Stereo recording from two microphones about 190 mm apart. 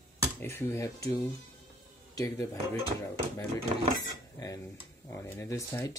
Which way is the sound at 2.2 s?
15° left (ahead or behind).